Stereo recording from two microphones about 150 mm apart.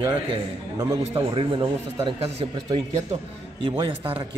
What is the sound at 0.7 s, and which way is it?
Speech, 20° right (ahead or behind).